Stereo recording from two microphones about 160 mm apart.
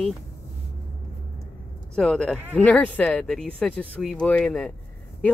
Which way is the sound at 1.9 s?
5° left (ahead or behind).